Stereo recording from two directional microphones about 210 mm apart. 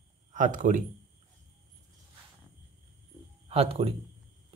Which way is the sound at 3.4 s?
30° right (ahead or behind).